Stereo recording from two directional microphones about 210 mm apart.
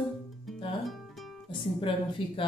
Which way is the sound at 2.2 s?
25° left (ahead or behind).